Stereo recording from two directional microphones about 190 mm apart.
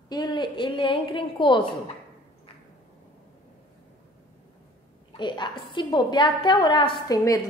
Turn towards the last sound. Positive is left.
turn(degrees=20)  # may be behind; listen again after turning